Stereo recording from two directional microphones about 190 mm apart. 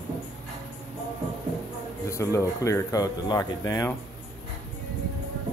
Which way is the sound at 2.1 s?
15° left (ahead or behind).